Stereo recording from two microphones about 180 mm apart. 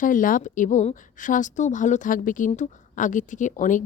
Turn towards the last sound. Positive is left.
turn(degrees=45)  # may be behind; listen again after turning